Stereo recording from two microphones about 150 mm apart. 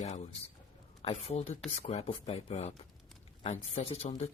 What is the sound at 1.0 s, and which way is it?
Speech, 40° left (ahead or behind).